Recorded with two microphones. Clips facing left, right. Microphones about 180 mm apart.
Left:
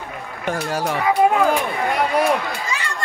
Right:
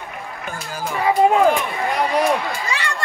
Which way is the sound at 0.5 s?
75° left (ahead or behind).